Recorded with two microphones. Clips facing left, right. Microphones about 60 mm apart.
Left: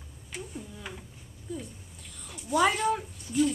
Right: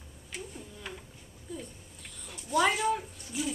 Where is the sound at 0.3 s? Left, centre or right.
Centre.